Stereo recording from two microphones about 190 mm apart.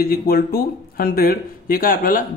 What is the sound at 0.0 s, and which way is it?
Speech, 50° left (ahead or behind).